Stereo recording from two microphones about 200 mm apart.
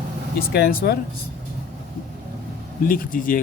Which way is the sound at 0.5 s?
55° left (ahead or behind).